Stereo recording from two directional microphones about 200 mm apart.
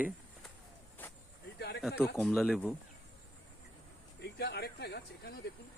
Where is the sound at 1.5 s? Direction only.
55° left (ahead or behind).